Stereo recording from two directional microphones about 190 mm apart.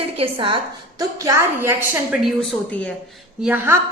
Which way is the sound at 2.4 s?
5° left (ahead or behind).